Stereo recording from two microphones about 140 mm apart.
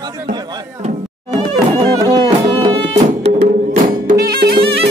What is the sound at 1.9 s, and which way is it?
Music, 25° right (ahead or behind).